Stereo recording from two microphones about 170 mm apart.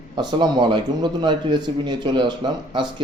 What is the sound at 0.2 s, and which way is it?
A man's voice, 25° right (ahead or behind).